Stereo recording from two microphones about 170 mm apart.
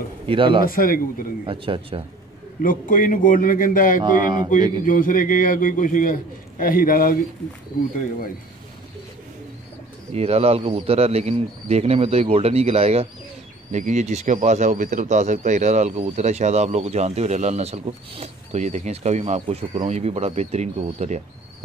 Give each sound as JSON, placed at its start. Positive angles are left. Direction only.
{"t": 0.3, "sound": "speech", "side_deg": -30}
{"t": 0.7, "sound": "speech", "side_deg": 55}
{"t": 1.4, "sound": "speech", "side_deg": -30}
{"t": 2.6, "sound": "a man's voice", "side_deg": 55}
{"t": 4.0, "sound": "speech", "side_deg": -25}
{"t": 4.8, "sound": "a man's voice", "side_deg": 55}
{"t": 10.1, "sound": "speech", "side_deg": -35}